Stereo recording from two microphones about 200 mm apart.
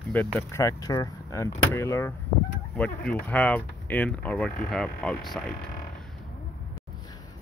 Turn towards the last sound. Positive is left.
turn(degrees=5)  # may be behind; listen again after turning